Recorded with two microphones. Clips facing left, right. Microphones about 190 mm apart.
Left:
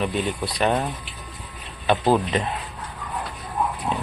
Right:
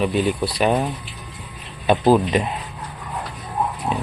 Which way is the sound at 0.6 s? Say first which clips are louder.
Right 3 dB; 5° right (ahead or behind).